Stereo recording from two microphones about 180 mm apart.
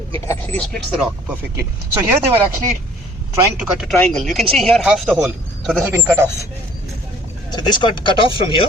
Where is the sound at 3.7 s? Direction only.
5° right (ahead or behind).